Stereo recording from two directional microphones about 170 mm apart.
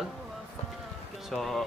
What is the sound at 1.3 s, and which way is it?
Speech, centre (ahead or behind).